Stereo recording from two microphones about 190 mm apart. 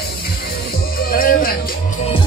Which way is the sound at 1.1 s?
50° left (ahead or behind).